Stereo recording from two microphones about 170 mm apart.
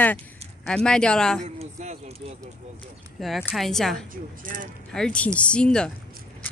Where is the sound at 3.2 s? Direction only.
Centre (ahead or behind).